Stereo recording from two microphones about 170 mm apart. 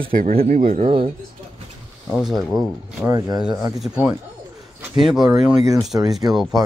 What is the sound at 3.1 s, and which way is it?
Speech, 25° right (ahead or behind).